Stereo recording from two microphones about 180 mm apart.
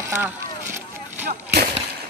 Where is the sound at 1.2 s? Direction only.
60° right (ahead or behind).